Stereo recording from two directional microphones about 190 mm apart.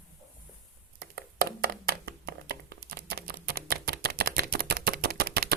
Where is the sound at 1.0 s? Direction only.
55° right (ahead or behind).